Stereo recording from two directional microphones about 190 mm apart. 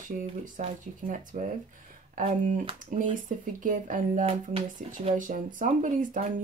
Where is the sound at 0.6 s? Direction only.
40° right (ahead or behind).